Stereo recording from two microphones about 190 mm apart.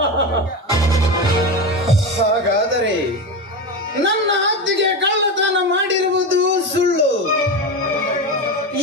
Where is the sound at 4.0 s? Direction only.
75° right (ahead or behind).